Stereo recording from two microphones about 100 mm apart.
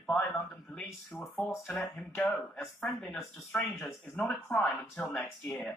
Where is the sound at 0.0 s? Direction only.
15° left (ahead or behind).